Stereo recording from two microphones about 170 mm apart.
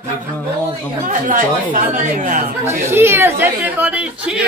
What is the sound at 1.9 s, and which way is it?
Speech, 50° right (ahead or behind).